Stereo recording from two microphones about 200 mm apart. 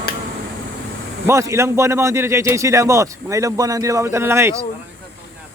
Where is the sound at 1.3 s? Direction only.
15° right (ahead or behind).